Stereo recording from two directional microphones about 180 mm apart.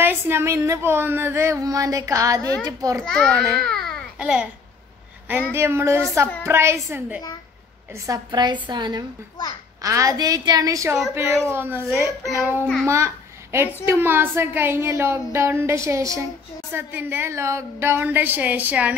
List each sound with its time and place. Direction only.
0.0 s a child's voice: 15° right (ahead or behind)
3.0 s a child's voice: 5° left (ahead or behind)
5.5 s a child's voice: 15° right (ahead or behind)